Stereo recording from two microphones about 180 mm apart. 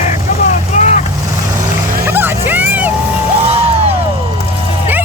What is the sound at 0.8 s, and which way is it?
Vehicle, 45° left (ahead or behind).